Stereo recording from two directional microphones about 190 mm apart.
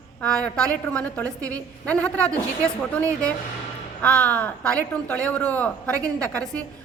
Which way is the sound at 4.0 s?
5° left (ahead or behind).